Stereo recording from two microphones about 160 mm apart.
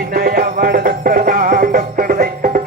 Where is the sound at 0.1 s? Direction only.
65° right (ahead or behind).